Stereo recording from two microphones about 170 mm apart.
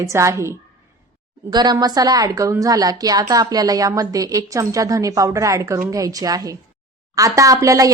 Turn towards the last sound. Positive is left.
turn(degrees=-20)  # may be behind; listen again after turning